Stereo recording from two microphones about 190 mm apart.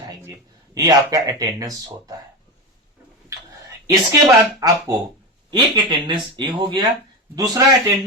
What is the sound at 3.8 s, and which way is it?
A woman's voice, 20° right (ahead or behind).